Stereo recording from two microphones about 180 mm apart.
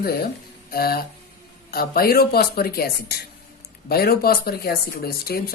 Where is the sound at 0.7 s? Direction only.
55° left (ahead or behind).